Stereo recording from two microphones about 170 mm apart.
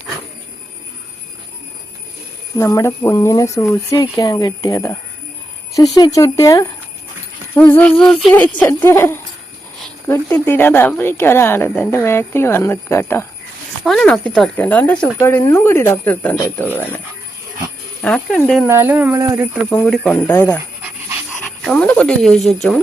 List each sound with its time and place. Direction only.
2.6 s a woman's voice: 20° left (ahead or behind)
13.8 s a woman's voice: 5° left (ahead or behind)
18.0 s speech: 5° left (ahead or behind)
18.7 s speech: 10° right (ahead or behind)
19.7 s a woman's voice: 10° left (ahead or behind)
21.6 s speech: 5° left (ahead or behind)